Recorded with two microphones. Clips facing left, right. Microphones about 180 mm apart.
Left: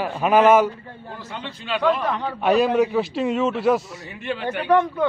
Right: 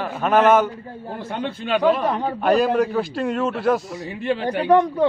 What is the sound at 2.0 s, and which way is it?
Speech, 40° right (ahead or behind).